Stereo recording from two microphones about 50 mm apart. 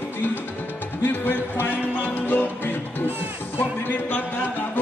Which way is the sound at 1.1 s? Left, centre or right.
Left.